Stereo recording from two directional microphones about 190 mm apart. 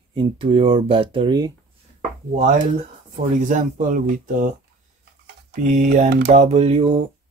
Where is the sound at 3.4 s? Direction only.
40° right (ahead or behind).